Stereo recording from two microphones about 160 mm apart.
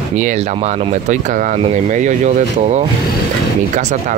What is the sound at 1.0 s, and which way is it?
Speech, 50° right (ahead or behind).